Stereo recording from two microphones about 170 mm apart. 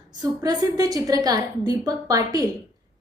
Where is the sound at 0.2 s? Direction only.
25° right (ahead or behind).